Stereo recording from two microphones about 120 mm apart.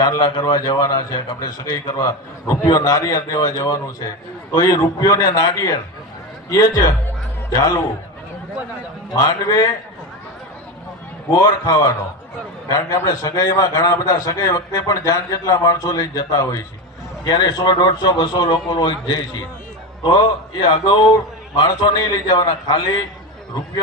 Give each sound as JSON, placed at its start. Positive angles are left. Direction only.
{"t": 0.0, "sound": "a man's voice", "side_deg": 35}
{"t": 9.1, "sound": "a man's voice", "side_deg": 30}
{"t": 11.6, "sound": "a man's voice", "side_deg": 30}